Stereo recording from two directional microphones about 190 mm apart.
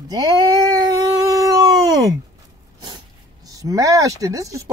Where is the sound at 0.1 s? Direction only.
20° right (ahead or behind).